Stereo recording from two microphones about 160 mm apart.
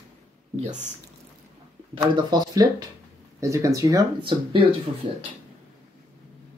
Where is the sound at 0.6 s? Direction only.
45° right (ahead or behind).